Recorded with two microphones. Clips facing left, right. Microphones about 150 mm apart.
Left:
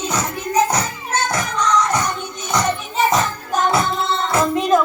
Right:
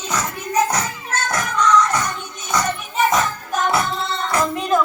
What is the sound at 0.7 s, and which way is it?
Music, 15° left (ahead or behind).